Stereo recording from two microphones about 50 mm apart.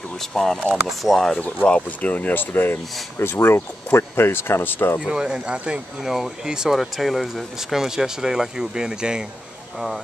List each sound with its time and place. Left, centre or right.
0.3 s speech: centre
0.8 s speech: centre
1.9 s speech: left
5.0 s speech: centre